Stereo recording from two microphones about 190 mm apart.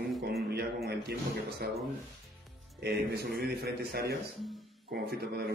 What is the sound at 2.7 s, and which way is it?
A man's voice, 55° right (ahead or behind).